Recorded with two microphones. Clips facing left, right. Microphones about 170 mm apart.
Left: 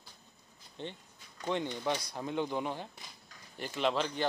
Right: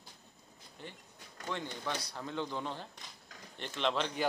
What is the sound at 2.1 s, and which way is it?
Speech, 15° left (ahead or behind).